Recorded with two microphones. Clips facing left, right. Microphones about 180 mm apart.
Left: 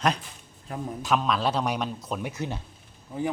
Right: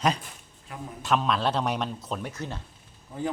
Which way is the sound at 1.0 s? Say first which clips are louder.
Even; centre (ahead or behind).